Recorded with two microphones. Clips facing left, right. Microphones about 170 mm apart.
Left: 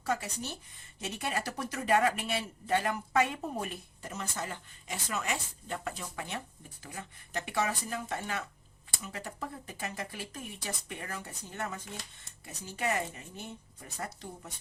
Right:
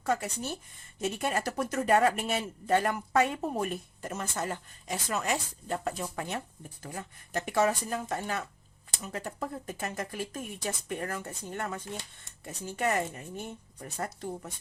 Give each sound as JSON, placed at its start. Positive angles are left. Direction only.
{"t": 0.0, "sound": "speech", "side_deg": -50}
{"t": 14.0, "sound": "speech", "side_deg": -50}